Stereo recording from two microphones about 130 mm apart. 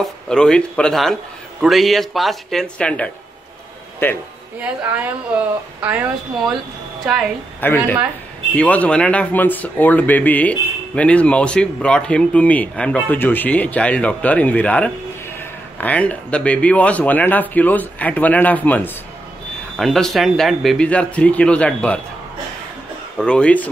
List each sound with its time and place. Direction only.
0.0 s speech: 5° left (ahead or behind)
4.6 s a woman's voice: 10° right (ahead or behind)
7.6 s speech: 15° left (ahead or behind)
19.8 s speech: centre (ahead or behind)
23.1 s speech: 5° left (ahead or behind)